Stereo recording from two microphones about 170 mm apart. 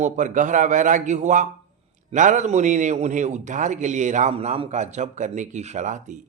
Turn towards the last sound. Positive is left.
turn(degrees=-45)  # may be behind; listen again after turning